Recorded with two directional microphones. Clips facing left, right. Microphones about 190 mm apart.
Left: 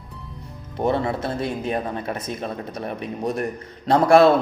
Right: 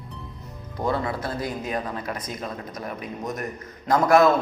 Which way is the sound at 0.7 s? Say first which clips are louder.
Left 4 dB; 25° left (ahead or behind).